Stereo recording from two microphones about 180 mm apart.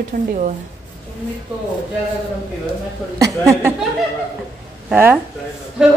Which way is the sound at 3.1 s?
20° right (ahead or behind).